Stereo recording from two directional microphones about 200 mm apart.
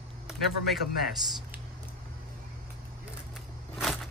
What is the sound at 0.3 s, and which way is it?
Speech, centre (ahead or behind).